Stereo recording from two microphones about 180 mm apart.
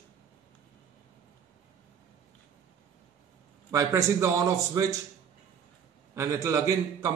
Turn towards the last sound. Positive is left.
turn(degrees=-20)  # may be behind; listen again after turning